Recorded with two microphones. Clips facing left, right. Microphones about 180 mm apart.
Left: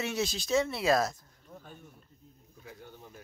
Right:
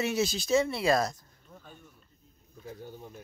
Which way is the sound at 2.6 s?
30° right (ahead or behind).